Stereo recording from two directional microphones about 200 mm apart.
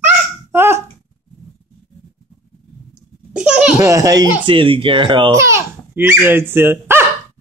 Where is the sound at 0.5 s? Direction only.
10° right (ahead or behind).